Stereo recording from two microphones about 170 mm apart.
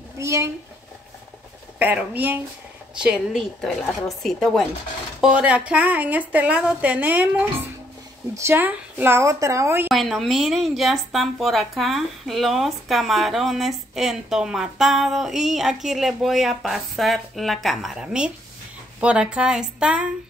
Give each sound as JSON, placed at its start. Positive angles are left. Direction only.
{"t": 0.2, "sound": "a woman's voice", "side_deg": -15}
{"t": 1.8, "sound": "a woman's voice", "side_deg": -10}
{"t": 8.4, "sound": "a woman's voice", "side_deg": -15}
{"t": 9.8, "sound": "a woman's voice", "side_deg": 0}